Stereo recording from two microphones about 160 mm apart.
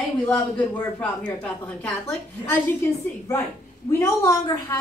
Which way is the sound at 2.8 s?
15° left (ahead or behind).